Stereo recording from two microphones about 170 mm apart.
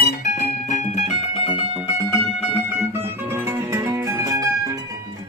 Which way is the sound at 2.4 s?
10° right (ahead or behind).